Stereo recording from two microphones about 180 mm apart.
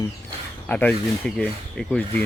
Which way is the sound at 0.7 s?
10° left (ahead or behind).